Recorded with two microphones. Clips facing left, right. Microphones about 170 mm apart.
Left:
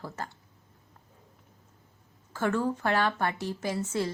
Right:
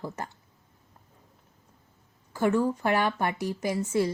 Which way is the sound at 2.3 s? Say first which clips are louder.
Right 3 dB; 15° right (ahead or behind).